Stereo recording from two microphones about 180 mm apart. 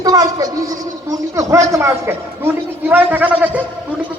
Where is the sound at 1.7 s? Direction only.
15° right (ahead or behind).